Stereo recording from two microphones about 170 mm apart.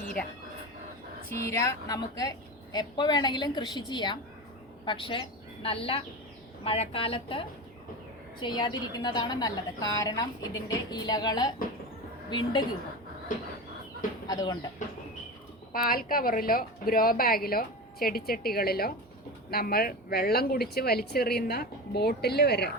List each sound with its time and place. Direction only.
1.5 s a woman's voice: 20° left (ahead or behind)
14.3 s a woman's voice: 20° left (ahead or behind)
15.7 s a woman's voice: 60° left (ahead or behind)